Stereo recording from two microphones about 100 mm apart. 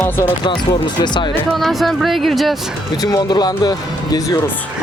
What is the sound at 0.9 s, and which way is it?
Speech, 50° left (ahead or behind).